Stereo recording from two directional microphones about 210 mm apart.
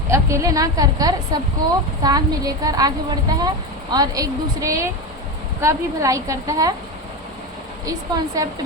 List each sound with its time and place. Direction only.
0.1 s a woman's voice: 15° right (ahead or behind)
7.9 s a woman's voice: 15° right (ahead or behind)